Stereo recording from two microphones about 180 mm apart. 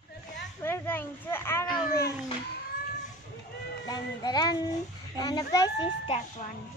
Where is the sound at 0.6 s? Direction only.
10° left (ahead or behind).